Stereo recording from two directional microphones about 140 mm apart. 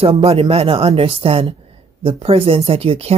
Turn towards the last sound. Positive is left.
turn(degrees=-45)  # may be behind; listen again after turning